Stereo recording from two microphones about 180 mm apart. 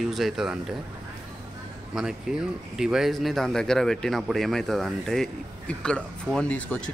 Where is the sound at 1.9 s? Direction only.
5° right (ahead or behind).